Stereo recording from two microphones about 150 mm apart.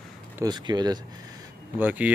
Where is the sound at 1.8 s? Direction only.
10° right (ahead or behind).